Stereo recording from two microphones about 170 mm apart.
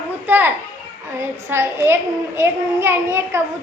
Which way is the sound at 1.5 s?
15° right (ahead or behind).